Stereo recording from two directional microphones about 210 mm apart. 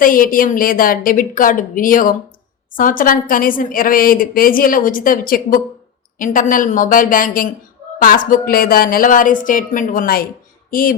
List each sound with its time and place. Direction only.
0.0 s a woman's voice: 40° left (ahead or behind)